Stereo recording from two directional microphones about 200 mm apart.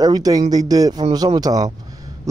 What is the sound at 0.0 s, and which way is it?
Speech, 20° right (ahead or behind).